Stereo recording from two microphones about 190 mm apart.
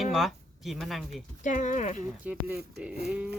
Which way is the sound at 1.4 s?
40° left (ahead or behind).